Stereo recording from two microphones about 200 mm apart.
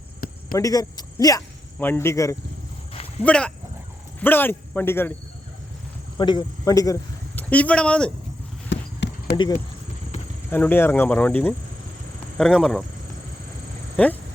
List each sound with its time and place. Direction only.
0.5 s speech: 20° left (ahead or behind)
6.1 s a man's voice: 20° left (ahead or behind); by 8.1 s 5° left (ahead or behind)
8.7 s clip-clop: 65° left (ahead or behind)
9.3 s speech: 20° left (ahead or behind)
10.5 s speech: 10° left (ahead or behind)
13.9 s speech: 5° left (ahead or behind)